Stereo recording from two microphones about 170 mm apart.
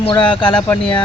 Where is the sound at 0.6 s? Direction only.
5° left (ahead or behind).